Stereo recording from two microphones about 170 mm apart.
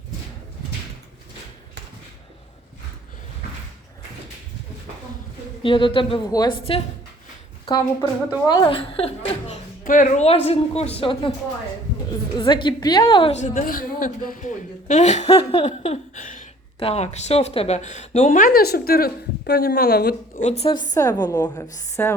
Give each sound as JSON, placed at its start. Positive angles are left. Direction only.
{"t": 5.6, "sound": "a woman's voice", "side_deg": 30}
{"t": 8.4, "sound": "a woman's voice", "side_deg": 25}
{"t": 9.8, "sound": "a woman's voice", "side_deg": 50}
{"t": 10.2, "sound": "a woman's voice", "side_deg": 35}
{"t": 12.4, "sound": "a woman's voice", "side_deg": 30}
{"t": 13.3, "sound": "speech", "side_deg": 45}
{"t": 20.4, "sound": "a woman's voice", "side_deg": 40}